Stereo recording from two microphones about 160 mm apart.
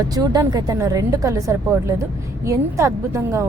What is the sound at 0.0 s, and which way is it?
A woman's voice, 20° right (ahead or behind).